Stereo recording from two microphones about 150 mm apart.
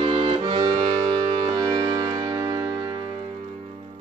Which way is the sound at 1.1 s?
40° right (ahead or behind).